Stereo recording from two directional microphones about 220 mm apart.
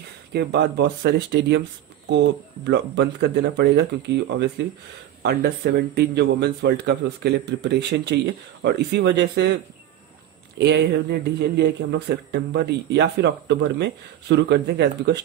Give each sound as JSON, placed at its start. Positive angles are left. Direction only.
{"t": 0.3, "sound": "speech", "side_deg": -50}
{"t": 10.6, "sound": "speech", "side_deg": -50}